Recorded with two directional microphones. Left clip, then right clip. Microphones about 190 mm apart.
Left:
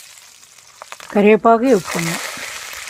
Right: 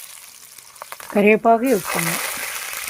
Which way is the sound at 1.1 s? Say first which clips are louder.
Left 3 dB; 15° left (ahead or behind).